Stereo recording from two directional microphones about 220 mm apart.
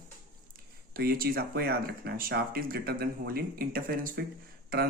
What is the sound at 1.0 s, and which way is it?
Speech, 45° right (ahead or behind).